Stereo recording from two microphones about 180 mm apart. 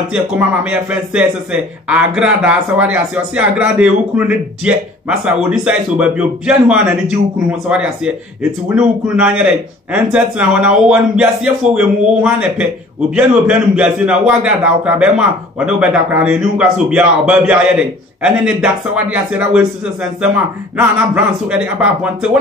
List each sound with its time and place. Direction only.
0.1 s a man's voice: 5° right (ahead or behind)